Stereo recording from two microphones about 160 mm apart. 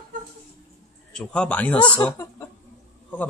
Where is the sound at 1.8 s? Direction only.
30° left (ahead or behind).